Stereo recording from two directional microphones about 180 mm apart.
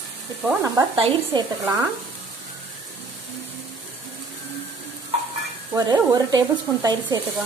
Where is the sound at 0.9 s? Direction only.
25° right (ahead or behind).